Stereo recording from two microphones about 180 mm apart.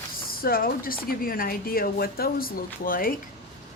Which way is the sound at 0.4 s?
55° left (ahead or behind).